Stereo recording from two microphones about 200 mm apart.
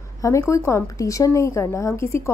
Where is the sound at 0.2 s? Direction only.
15° left (ahead or behind).